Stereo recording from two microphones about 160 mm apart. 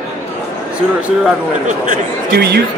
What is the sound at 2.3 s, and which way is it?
Speech, 85° right.